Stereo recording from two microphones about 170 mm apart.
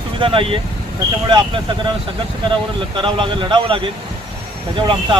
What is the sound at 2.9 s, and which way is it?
Speech, 30° right (ahead or behind).